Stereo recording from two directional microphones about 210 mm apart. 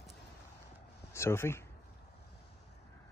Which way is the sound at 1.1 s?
10° left (ahead or behind).